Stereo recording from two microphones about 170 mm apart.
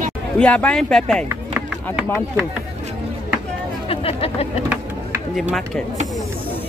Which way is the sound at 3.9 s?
35° left (ahead or behind).